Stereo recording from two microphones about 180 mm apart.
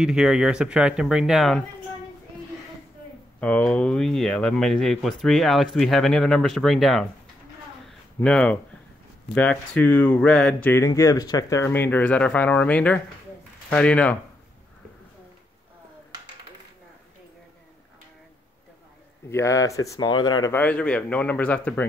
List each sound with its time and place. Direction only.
0.0 s speech: 5° right (ahead or behind)
3.3 s speech: 5° left (ahead or behind)
7.8 s a sound: 5° left (ahead or behind)
9.3 s speech: 10° left (ahead or behind)
19.3 s speech: 15° left (ahead or behind)
20.5 s speech: 5° left (ahead or behind)